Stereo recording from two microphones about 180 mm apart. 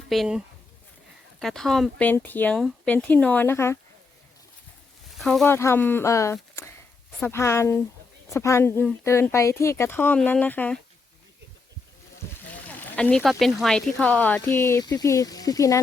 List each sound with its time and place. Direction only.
0.1 s speech: centre (ahead or behind); by 3.8 s 15° left (ahead or behind)
5.1 s speech: centre (ahead or behind)
5.5 s speech: 15° left (ahead or behind)
12.6 s speech: 5° left (ahead or behind)